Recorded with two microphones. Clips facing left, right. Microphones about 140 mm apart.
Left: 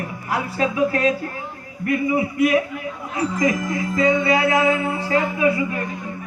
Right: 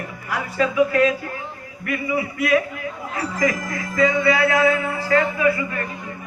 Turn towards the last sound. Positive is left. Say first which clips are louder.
# left 1 dB
turn(degrees=20)  # may be behind; listen again after turning